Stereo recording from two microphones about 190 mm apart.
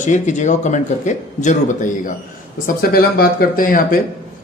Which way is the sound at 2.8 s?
50° left (ahead or behind).